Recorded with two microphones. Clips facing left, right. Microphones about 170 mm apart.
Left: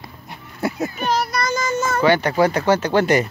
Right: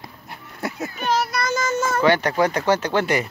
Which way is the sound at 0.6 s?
35° left (ahead or behind).